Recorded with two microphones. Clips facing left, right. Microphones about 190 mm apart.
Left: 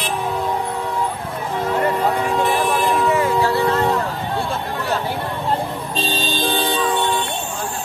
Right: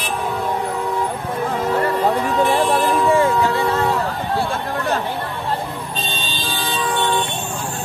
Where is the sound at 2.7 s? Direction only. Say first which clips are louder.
Right 2 dB; 30° right (ahead or behind).